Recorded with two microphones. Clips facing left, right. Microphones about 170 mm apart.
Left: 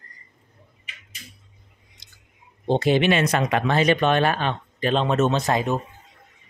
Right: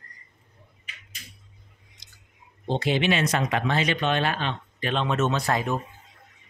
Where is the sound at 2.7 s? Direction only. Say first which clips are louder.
Left 5 dB; 50° left (ahead or behind).